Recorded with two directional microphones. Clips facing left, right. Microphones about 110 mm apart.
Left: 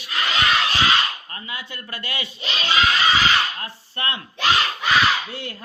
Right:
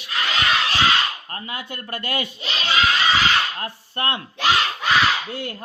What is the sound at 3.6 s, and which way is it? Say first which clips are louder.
Chopping: right 3 dB; 50° right (ahead or behind).